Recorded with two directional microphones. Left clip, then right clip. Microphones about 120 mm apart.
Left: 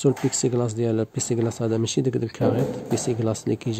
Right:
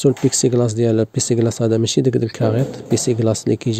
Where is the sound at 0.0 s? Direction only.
35° right (ahead or behind).